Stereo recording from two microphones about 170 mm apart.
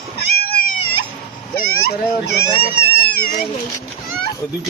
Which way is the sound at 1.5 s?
60° left (ahead or behind).